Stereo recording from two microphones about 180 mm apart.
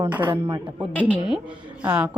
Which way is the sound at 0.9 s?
10° left (ahead or behind).